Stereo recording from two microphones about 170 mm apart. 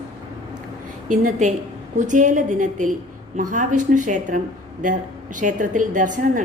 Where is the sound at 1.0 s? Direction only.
45° right (ahead or behind).